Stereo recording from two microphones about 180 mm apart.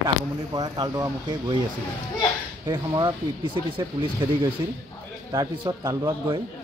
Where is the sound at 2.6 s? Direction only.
25° right (ahead or behind).